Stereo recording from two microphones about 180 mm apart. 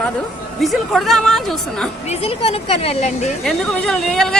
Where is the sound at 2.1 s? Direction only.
35° left (ahead or behind).